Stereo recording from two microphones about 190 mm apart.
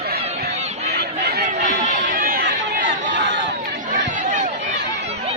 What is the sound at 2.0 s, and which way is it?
Chatter, 50° right (ahead or behind).